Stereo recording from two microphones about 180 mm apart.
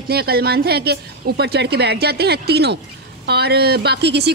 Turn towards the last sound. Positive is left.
turn(degrees=-70)  # may be behind; listen again after turning